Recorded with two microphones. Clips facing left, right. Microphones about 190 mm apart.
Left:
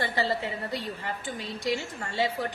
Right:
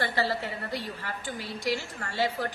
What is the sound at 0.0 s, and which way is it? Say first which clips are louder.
A woman's voice: left 1 dB; 20° left (ahead or behind).